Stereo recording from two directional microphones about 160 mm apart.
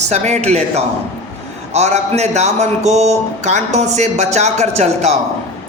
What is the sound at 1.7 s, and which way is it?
A man's voice, 45° right (ahead or behind).